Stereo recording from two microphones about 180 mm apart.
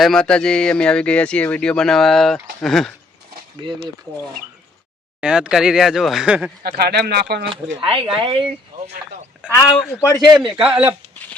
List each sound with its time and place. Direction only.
0.0 s speech: 5° left (ahead or behind)
3.6 s speech: 25° right (ahead or behind)
5.2 s speech: 5° right (ahead or behind)
6.6 s speech: 65° right (ahead or behind)
7.8 s speech: 30° right (ahead or behind)
8.7 s a sound: 50° right (ahead or behind)
9.5 s speech: 20° left (ahead or behind)
10.2 s speech: centre (ahead or behind)